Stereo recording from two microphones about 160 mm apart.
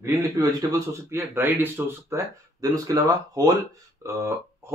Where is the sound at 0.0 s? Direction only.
20° right (ahead or behind).